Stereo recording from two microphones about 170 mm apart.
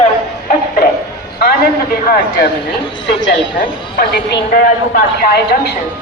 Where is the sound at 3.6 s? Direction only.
65° left (ahead or behind).